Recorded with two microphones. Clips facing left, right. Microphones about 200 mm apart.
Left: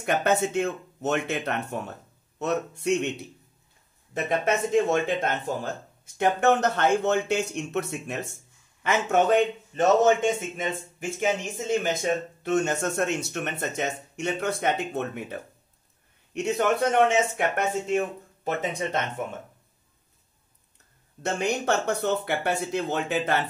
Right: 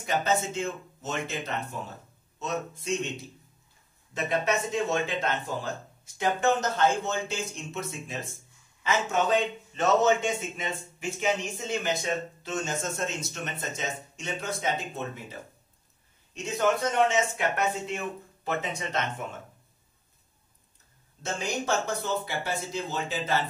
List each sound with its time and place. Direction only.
0.0 s speech: 60° left (ahead or behind)
4.1 s speech: 55° left (ahead or behind)
8.8 s speech: 55° left (ahead or behind)
11.1 s speech: 50° left (ahead or behind)
16.3 s speech: 65° left (ahead or behind); by 18.8 s 45° left (ahead or behind)
21.2 s speech: 65° left (ahead or behind)